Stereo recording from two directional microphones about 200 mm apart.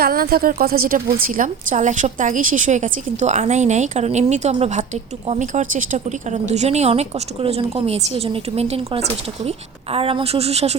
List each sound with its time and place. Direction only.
0.0 s a woman's voice: 50° right (ahead or behind); by 10.8 s 30° right (ahead or behind)